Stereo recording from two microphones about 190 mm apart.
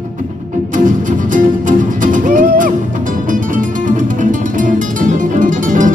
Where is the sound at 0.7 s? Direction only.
45° right (ahead or behind).